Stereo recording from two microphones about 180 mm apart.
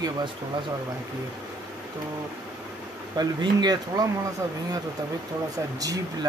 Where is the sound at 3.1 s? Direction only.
20° right (ahead or behind).